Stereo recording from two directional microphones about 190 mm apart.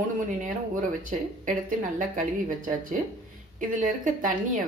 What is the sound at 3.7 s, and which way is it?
Speech, 45° right (ahead or behind).